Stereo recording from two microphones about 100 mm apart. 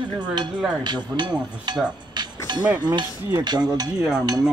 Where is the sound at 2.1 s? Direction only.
45° right (ahead or behind).